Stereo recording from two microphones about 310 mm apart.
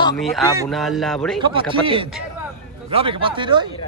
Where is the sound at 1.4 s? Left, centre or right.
Centre.